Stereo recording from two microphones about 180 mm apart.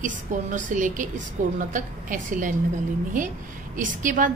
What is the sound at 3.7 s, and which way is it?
Speech, 45° right (ahead or behind).